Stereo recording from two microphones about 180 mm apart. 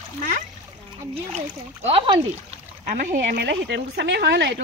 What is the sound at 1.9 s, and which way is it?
Speech, 30° right (ahead or behind).